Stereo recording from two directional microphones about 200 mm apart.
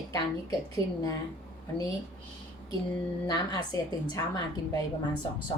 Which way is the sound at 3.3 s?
20° left (ahead or behind).